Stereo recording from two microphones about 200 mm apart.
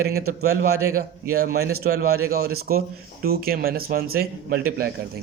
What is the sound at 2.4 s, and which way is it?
A man's voice, 50° right (ahead or behind).